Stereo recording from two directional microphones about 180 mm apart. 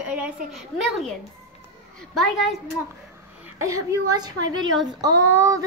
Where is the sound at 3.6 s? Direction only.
15° right (ahead or behind).